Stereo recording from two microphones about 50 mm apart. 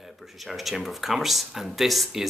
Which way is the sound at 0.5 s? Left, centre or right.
Centre.